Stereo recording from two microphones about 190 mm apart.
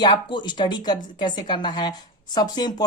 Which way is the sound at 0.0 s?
25° left (ahead or behind).